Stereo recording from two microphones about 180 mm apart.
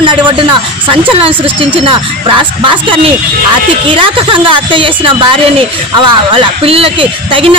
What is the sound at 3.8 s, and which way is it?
A woman's voice, 30° right (ahead or behind).